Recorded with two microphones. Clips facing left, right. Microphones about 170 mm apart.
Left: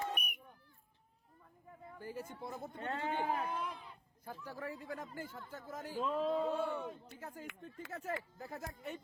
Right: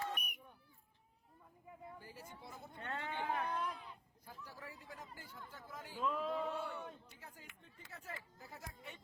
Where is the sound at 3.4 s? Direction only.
Centre (ahead or behind).